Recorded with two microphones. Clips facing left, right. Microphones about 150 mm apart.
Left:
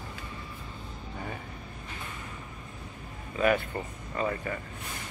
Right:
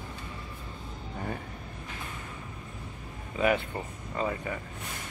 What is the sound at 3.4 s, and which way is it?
Speech, 15° right (ahead or behind).